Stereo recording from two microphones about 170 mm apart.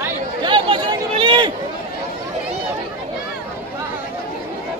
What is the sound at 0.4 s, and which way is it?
Chatter, 30° right (ahead or behind).